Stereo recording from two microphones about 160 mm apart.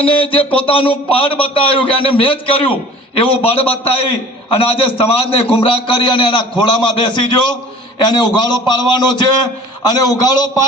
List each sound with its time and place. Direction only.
0.0 s a man's voice: 35° left (ahead or behind)
4.7 s a man's voice: 35° left (ahead or behind)